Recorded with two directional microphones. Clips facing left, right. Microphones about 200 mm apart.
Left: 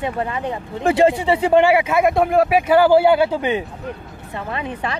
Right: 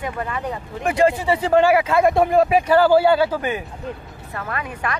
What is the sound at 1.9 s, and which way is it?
A man's voice, centre (ahead or behind).